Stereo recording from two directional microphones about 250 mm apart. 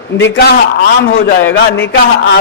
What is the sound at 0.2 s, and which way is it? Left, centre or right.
A man's voice, left.